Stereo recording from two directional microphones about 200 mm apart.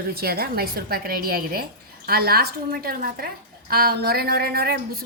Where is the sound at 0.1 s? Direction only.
50° right (ahead or behind).